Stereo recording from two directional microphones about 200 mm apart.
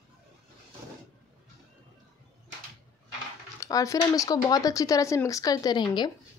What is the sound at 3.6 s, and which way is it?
Speech, 15° left (ahead or behind).